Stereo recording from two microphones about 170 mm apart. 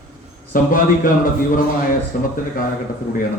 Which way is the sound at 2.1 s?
55° left (ahead or behind).